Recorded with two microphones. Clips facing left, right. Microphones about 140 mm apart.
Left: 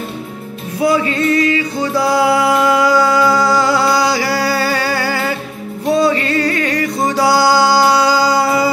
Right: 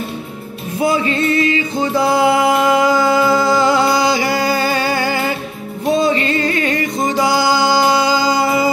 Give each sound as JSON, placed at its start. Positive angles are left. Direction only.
{"t": 0.8, "sound": "music", "side_deg": -25}